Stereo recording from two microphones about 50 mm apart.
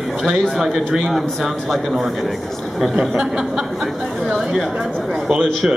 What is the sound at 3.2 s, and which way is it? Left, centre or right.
A man's voice, centre.